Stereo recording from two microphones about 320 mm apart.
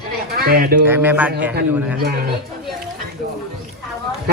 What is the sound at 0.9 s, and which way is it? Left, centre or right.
Speech, centre.